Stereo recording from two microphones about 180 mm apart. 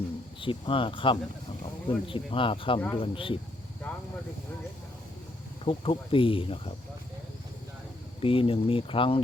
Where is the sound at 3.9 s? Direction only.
5° left (ahead or behind).